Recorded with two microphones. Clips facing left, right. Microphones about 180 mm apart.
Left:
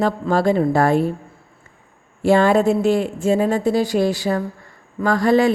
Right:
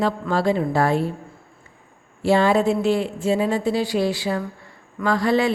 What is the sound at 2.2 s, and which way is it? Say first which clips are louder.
Speech: left 3 dB; 50° left (ahead or behind).